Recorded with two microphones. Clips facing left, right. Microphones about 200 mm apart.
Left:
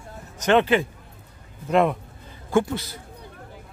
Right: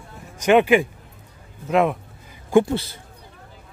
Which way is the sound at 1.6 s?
Centre (ahead or behind).